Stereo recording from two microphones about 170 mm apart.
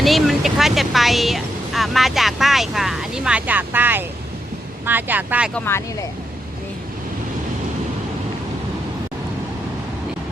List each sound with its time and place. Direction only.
0.0 s speech: centre (ahead or behind)
5.5 s speech: 15° left (ahead or behind)